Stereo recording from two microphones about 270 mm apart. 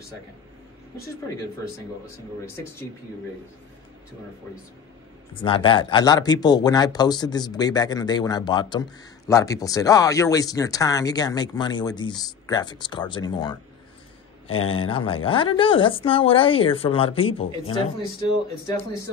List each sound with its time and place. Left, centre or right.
5.3 s speech: centre
14.5 s speech: left
14.8 s speech: centre